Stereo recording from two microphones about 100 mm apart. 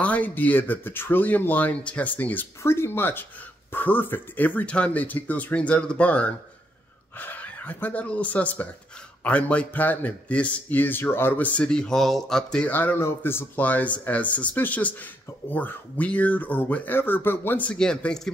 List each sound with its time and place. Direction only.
0.0 s speech: 15° left (ahead or behind)